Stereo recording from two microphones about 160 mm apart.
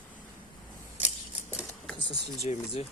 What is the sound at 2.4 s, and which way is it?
Speech, 40° left (ahead or behind).